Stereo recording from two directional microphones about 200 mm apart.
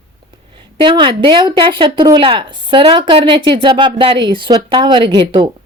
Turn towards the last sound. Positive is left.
turn(degrees=-25)  # may be behind; listen again after turning